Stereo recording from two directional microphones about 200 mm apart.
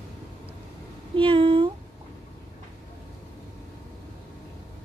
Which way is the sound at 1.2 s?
25° right (ahead or behind).